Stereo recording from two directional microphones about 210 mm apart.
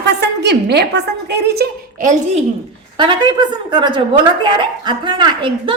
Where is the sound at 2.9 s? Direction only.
20° right (ahead or behind).